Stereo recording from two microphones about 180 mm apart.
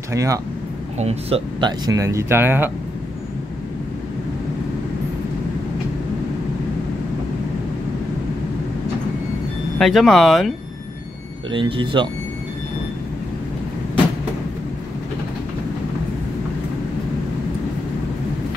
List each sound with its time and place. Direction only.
0.1 s speech: 15° right (ahead or behind)
0.9 s speech: 35° right (ahead or behind); by 2.7 s 10° right (ahead or behind)
9.8 s speech: centre (ahead or behind)
11.5 s speech: 25° right (ahead or behind)